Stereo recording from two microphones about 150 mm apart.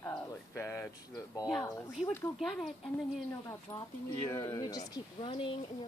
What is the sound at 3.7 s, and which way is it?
Speech, 25° left (ahead or behind).